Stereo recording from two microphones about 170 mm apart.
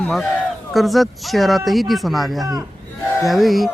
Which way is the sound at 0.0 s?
5° left (ahead or behind).